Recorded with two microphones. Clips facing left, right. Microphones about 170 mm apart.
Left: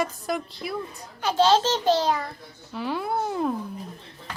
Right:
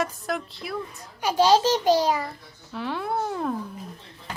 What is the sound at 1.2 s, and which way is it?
A child's voice, 10° right (ahead or behind).